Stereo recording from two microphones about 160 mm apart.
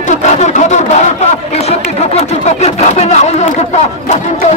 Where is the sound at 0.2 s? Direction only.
45° left (ahead or behind).